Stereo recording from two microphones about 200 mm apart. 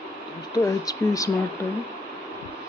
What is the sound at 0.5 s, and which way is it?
Speech, 15° left (ahead or behind).